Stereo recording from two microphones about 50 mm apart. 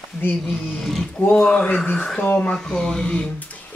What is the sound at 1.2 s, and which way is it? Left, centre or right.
Speech, left.